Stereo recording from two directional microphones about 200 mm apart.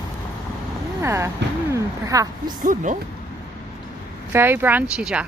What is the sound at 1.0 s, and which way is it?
Speech, 15° right (ahead or behind).